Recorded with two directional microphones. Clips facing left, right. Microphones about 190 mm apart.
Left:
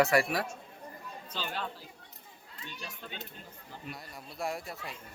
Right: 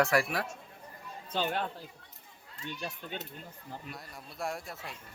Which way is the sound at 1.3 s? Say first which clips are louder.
Right 7 dB; 55° right (ahead or behind).